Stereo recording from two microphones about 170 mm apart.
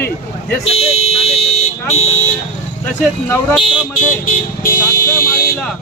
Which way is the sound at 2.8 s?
5° left (ahead or behind).